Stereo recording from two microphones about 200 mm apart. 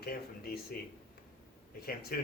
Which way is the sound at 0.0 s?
50° left (ahead or behind).